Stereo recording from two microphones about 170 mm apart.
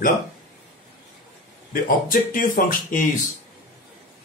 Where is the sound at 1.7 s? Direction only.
55° left (ahead or behind).